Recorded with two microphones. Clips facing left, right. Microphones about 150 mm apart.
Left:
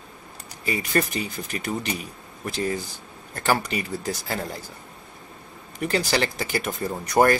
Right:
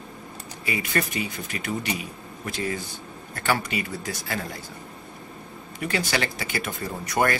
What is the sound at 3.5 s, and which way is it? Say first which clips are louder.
Speech: left 2 dB; 40° left (ahead or behind).